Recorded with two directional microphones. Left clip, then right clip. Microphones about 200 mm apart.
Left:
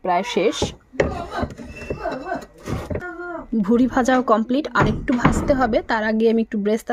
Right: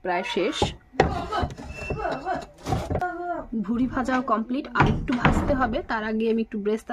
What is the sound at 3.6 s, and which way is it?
A woman's voice, 45° left (ahead or behind).